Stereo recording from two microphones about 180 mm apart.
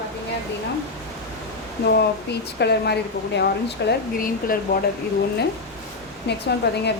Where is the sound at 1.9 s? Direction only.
65° left (ahead or behind).